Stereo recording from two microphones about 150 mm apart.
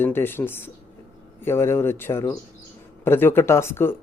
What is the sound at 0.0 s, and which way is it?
Speech, 15° left (ahead or behind).